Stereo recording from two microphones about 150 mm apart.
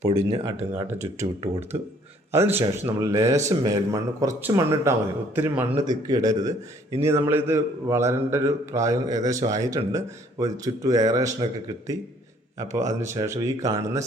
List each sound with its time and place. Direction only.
0.0 s speech: 40° right (ahead or behind)
0.9 s a man's voice: 20° right (ahead or behind)
5.7 s a man's voice: 25° right (ahead or behind)
12.5 s a man's voice: 20° right (ahead or behind)